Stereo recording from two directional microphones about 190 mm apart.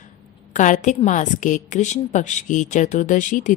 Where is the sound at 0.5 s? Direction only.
40° left (ahead or behind).